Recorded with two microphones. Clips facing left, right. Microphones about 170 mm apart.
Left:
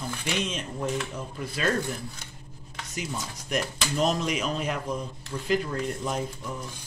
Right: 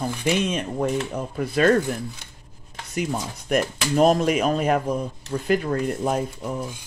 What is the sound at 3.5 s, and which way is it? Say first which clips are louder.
Speech: right 7 dB; 50° right (ahead or behind).